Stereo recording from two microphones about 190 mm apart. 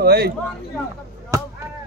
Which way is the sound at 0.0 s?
55° right (ahead or behind).